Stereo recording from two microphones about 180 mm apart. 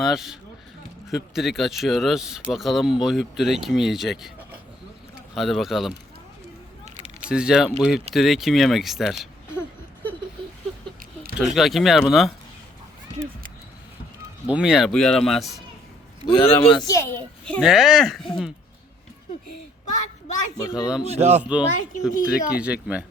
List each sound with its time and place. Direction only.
0.0 s speech: centre (ahead or behind)
5.3 s speech: centre (ahead or behind)
7.3 s speech: 5° right (ahead or behind)
9.6 s a sound: 10° left (ahead or behind)
11.3 s speech: centre (ahead or behind)
14.4 s speech: 5° right (ahead or behind)
16.6 s a child's voice: 25° left (ahead or behind)
17.4 s speech: centre (ahead or behind)
20.6 s a child's voice: 20° left (ahead or behind)
21.0 s a man's voice: 35° right (ahead or behind)
21.4 s speech: 5° right (ahead or behind)